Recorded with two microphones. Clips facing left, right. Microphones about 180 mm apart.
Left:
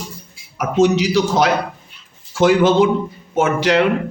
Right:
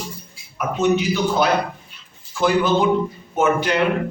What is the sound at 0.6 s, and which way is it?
A man's voice, 90° left.